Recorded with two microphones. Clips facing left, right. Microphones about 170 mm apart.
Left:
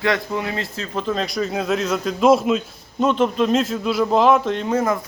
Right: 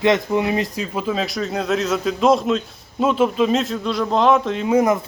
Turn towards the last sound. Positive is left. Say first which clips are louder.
# right 2 dB
turn(degrees=-5)  # may be behind; listen again after turning